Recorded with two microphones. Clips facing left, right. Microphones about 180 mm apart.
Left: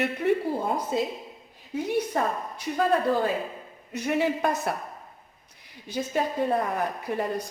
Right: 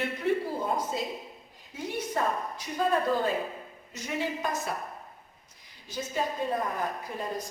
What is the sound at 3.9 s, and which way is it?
Speech, 60° left (ahead or behind).